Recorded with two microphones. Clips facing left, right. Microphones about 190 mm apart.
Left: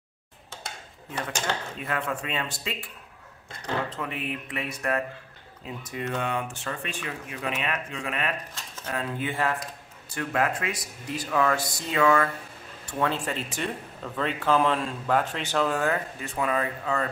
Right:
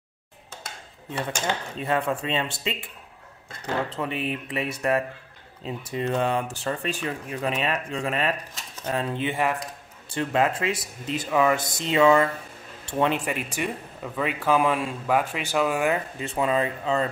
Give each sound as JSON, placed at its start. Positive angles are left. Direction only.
{"t": 1.8, "sound": "speech", "side_deg": -30}
{"t": 3.9, "sound": "speech", "side_deg": -30}